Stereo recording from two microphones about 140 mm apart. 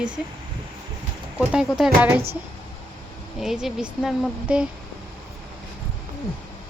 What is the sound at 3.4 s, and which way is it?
Speech, centre (ahead or behind).